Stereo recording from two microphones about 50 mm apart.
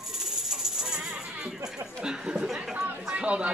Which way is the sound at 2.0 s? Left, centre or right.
Centre.